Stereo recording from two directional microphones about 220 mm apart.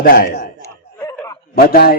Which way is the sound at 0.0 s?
40° left (ahead or behind).